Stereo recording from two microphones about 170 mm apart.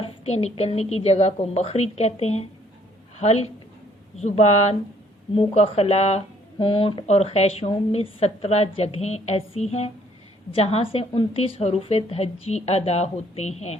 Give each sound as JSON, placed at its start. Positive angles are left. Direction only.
{"t": 0.0, "sound": "speech", "side_deg": 40}